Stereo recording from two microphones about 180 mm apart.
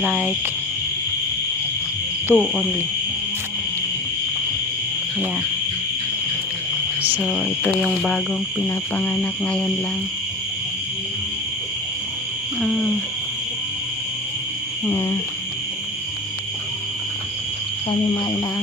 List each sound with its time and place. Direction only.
0.0 s speech: 10° right (ahead or behind)
2.3 s owl: centre (ahead or behind)
7.2 s owl: centre (ahead or behind)
12.5 s owl: centre (ahead or behind)
14.8 s cricket: 15° left (ahead or behind)